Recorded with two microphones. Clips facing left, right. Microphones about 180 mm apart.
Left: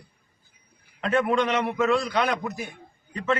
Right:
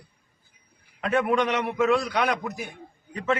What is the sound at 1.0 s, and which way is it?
A man's voice, 10° right (ahead or behind).